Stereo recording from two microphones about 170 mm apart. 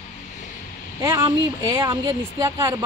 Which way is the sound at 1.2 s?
20° right (ahead or behind).